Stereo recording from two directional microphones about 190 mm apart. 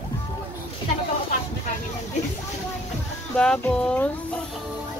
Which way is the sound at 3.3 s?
5° left (ahead or behind).